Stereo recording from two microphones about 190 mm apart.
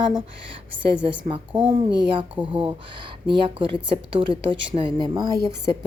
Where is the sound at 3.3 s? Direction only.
25° right (ahead or behind).